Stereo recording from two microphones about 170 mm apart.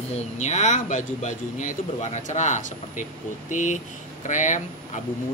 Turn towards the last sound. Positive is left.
turn(degrees=45)  # may be behind; listen again after turning